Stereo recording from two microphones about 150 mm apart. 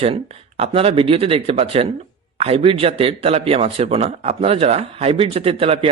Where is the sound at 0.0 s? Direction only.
40° right (ahead or behind).